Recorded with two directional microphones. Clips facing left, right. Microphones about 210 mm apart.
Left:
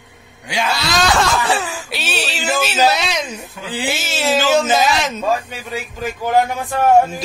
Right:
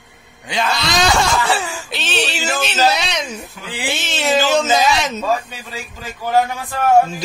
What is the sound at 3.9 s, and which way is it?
Speech, 5° left (ahead or behind).